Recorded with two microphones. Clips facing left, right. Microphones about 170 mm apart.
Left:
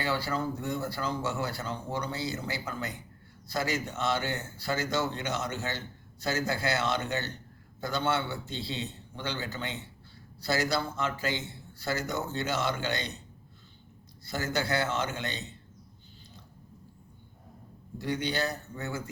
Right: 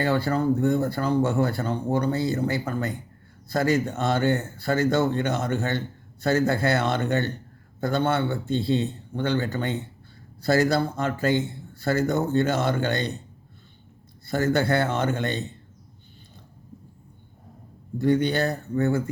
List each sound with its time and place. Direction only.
0.0 s speech: 55° right (ahead or behind)
14.3 s speech: 55° right (ahead or behind)
17.9 s speech: 50° right (ahead or behind)